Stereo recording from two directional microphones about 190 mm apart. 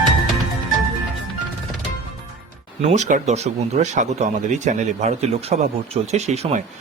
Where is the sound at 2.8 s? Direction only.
35° right (ahead or behind).